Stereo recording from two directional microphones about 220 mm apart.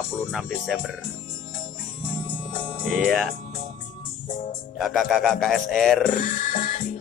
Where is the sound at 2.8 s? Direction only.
Centre (ahead or behind).